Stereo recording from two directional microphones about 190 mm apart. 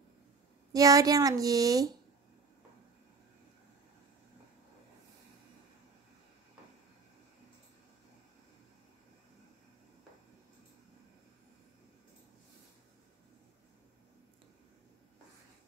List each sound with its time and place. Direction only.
0.7 s speech: 20° right (ahead or behind)